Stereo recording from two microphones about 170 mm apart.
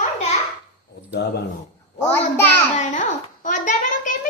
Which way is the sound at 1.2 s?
85° left.